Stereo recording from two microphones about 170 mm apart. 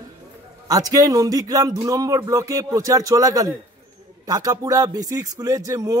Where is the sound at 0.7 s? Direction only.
20° right (ahead or behind).